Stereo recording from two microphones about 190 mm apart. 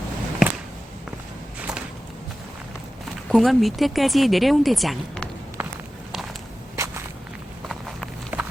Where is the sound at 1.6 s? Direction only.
5° right (ahead or behind).